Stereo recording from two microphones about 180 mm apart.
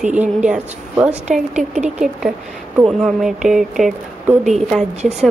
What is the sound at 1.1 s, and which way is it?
Speech, 40° right (ahead or behind).